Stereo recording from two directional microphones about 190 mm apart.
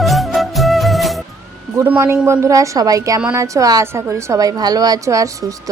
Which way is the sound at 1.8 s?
10° right (ahead or behind).